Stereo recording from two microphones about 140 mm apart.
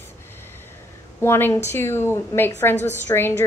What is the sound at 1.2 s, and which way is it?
A woman's voice, 15° left (ahead or behind).